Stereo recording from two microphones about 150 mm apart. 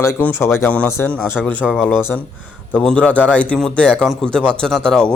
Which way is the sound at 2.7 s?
5° left (ahead or behind).